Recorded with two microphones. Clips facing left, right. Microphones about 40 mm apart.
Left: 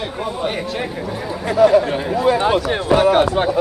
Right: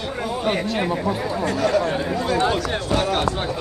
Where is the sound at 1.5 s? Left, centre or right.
Centre.